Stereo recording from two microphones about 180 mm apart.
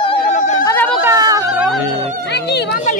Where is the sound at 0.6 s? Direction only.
15° left (ahead or behind).